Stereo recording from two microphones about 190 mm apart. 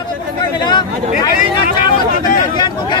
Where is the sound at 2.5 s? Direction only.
25° left (ahead or behind).